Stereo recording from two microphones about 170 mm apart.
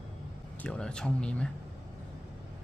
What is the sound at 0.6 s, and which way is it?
Speech, 5° left (ahead or behind).